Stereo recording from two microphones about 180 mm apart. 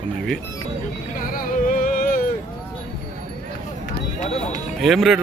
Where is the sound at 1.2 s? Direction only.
50° left (ahead or behind).